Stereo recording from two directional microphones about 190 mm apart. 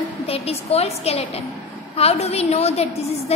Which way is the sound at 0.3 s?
30° left (ahead or behind).